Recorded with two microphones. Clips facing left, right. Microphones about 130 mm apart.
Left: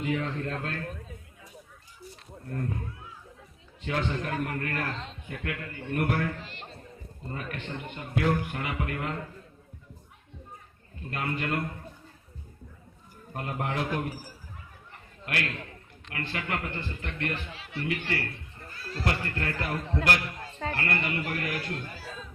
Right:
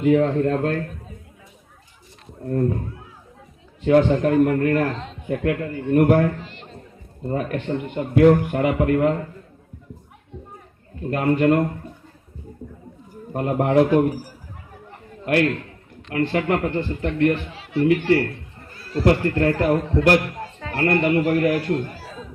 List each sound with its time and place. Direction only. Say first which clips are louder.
0.0 s a man's voice: right 13 dB; 45° right (ahead or behind)
3.8 s a man's voice: right 15 dB; 45° right (ahead or behind)
11.1 s a man's voice: right 13 dB; 45° right (ahead or behind)
13.3 s a man's voice: right 14 dB; 40° right (ahead or behind)
15.3 s a man's voice: right 14 dB; 40° right (ahead or behind)